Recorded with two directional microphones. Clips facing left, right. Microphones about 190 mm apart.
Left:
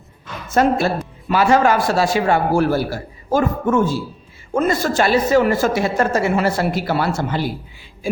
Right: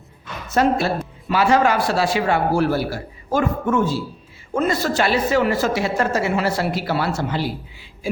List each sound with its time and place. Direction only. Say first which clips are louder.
0.5 s a woman's voice: left 2 dB; 50° left (ahead or behind)